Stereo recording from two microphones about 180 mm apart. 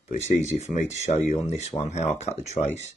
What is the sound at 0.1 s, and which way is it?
Speech, 40° left (ahead or behind).